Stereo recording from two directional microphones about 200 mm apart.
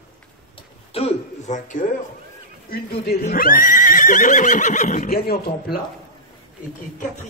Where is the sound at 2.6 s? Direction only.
50° left (ahead or behind).